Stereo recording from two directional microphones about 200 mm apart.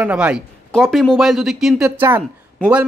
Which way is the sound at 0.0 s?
5° right (ahead or behind).